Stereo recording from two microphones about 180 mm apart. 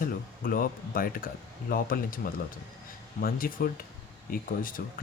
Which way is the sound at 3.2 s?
50° left (ahead or behind).